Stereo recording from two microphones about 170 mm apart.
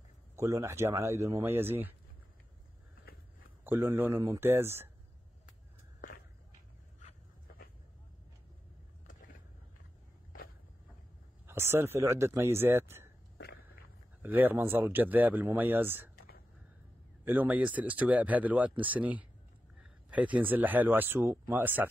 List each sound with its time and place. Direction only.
0.4 s speech: 15° right (ahead or behind)
3.6 s speech: 15° right (ahead or behind)
5.5 s a sound: 55° left (ahead or behind)
11.4 s speech: 15° right (ahead or behind)
14.2 s speech: 10° right (ahead or behind)
16.2 s whispering: 65° left (ahead or behind)
17.2 s speech: 10° right (ahead or behind)